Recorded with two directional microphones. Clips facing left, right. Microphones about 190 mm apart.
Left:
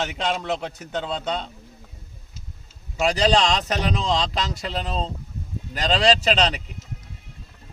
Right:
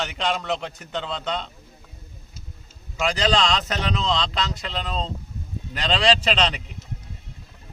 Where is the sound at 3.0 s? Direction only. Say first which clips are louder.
Left 2 dB; 35° left (ahead or behind).